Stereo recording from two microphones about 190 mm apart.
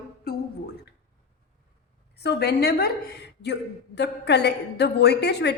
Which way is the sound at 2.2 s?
60° left (ahead or behind).